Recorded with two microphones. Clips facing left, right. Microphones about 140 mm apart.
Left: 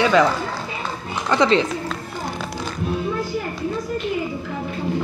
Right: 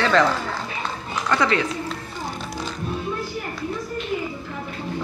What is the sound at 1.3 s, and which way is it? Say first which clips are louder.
Speech: left 4 dB; 25° left (ahead or behind).